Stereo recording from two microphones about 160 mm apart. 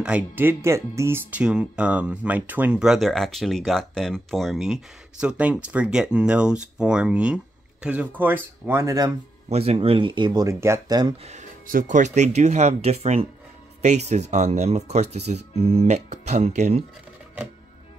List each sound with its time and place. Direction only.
0.0 s speech: 10° right (ahead or behind)
9.5 s speech: 40° right (ahead or behind)
11.2 s speech: 55° right (ahead or behind)